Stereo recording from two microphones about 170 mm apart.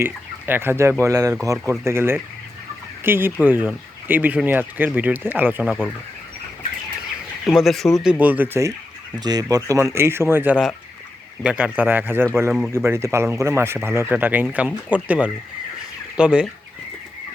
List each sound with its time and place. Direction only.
0.0 s speech: 10° right (ahead or behind)
5.6 s speech: 5° left (ahead or behind)
7.4 s speech: centre (ahead or behind)